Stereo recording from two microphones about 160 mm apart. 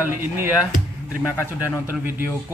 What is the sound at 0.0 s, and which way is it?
Mantra, 15° right (ahead or behind).